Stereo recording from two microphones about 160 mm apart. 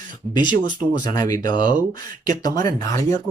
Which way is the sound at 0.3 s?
25° left (ahead or behind).